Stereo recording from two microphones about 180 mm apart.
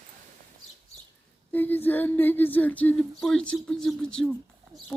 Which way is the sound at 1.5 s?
10° left (ahead or behind).